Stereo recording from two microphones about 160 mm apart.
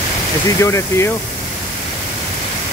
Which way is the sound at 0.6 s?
15° left (ahead or behind).